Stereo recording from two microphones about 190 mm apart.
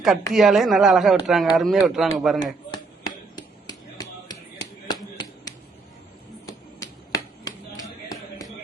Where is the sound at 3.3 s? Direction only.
20° left (ahead or behind).